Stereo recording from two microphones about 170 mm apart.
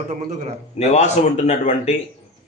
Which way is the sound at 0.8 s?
40° left (ahead or behind).